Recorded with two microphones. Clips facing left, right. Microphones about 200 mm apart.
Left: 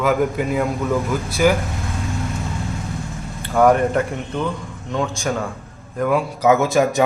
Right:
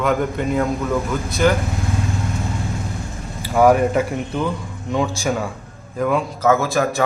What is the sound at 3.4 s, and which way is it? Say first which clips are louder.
A man's voice: right 1 dB; 5° right (ahead or behind).